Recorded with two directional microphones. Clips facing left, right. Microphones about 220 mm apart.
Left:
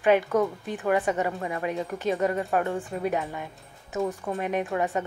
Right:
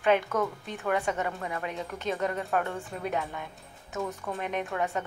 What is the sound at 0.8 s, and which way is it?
A woman's voice, 15° left (ahead or behind).